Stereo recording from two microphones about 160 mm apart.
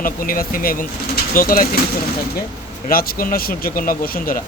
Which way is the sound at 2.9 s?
65° left (ahead or behind).